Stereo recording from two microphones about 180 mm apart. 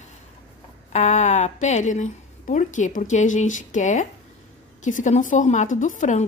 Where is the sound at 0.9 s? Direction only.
40° left (ahead or behind).